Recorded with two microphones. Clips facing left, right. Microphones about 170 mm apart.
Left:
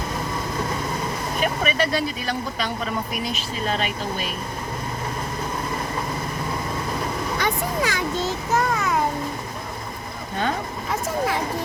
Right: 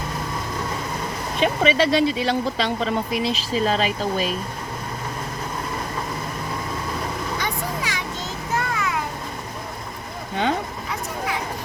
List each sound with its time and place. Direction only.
1.4 s speech: 25° right (ahead or behind)
7.3 s vehicle: 55° left (ahead or behind)
8.5 s a sound: 40° left (ahead or behind)